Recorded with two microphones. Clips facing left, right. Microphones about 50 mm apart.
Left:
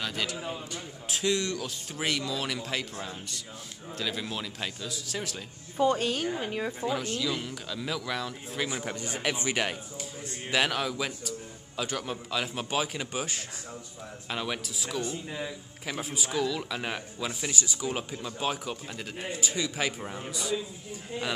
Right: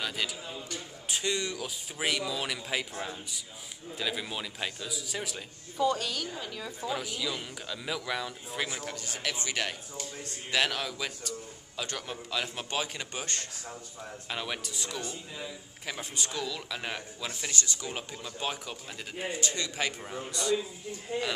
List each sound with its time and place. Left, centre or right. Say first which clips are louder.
0.0 s a man's voice: left 2 dB; centre
5.8 s a woman's voice: left 3 dB; left
6.9 s a man's voice: left 1 dB; centre
8.8 s a man's voice: left 4 dB; left; by 20.5 s centre